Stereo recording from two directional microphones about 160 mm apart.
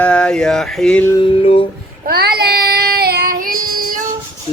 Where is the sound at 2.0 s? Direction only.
75° right (ahead or behind).